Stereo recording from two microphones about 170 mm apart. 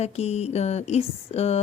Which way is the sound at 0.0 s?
40° left (ahead or behind).